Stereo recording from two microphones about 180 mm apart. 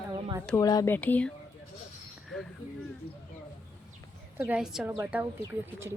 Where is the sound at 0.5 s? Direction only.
20° left (ahead or behind).